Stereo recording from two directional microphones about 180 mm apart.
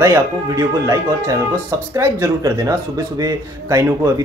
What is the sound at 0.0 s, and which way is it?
Speech, 15° right (ahead or behind).